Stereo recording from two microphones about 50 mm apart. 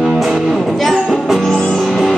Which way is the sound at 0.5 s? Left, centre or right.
Centre.